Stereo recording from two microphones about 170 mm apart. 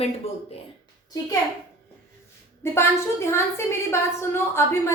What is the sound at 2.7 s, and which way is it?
A woman's voice, 15° left (ahead or behind).